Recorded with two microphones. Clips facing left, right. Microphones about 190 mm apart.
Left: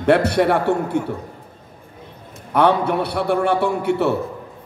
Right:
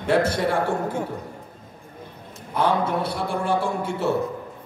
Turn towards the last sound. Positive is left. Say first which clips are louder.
# left 5 dB
turn(degrees=65)  # may be behind; listen again after turning